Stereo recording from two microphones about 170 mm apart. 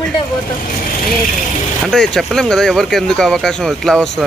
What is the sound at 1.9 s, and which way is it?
Speech, centre (ahead or behind).